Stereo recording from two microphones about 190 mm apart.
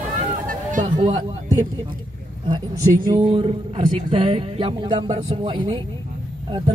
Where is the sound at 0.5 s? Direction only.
40° right (ahead or behind).